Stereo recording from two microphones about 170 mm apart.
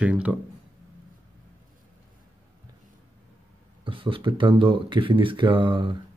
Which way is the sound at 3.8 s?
30° right (ahead or behind).